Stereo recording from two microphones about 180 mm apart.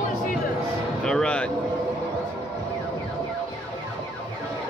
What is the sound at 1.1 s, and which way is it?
Speech, 5° left (ahead or behind).